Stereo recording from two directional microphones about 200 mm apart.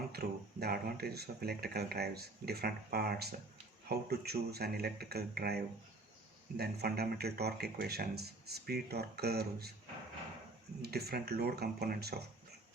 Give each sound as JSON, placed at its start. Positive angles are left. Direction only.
{"t": 0.1, "sound": "speech", "side_deg": -50}
{"t": 6.6, "sound": "speech", "side_deg": -50}
{"t": 10.8, "sound": "speech", "side_deg": -50}